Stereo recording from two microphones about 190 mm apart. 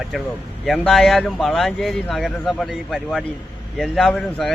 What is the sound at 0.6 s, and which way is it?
Speech, centre (ahead or behind).